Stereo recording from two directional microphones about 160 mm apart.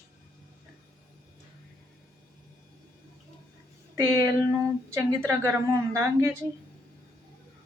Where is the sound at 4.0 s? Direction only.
20° right (ahead or behind).